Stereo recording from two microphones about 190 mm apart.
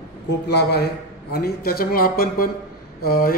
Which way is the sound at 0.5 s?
60° left (ahead or behind).